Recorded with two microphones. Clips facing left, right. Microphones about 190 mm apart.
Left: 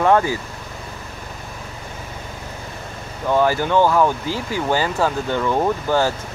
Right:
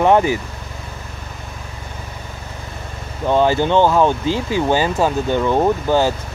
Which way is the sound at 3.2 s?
20° right (ahead or behind).